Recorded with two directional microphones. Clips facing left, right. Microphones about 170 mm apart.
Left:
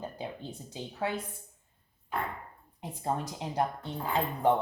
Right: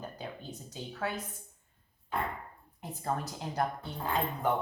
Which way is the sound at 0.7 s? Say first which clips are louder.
Left 3 dB; 25° left (ahead or behind).